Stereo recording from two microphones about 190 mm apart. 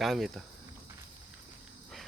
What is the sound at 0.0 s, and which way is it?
Speech, centre (ahead or behind).